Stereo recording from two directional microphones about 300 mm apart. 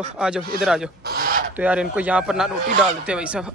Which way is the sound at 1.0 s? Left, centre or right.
Right.